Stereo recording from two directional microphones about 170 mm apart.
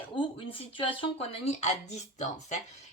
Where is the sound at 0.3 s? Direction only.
30° left (ahead or behind).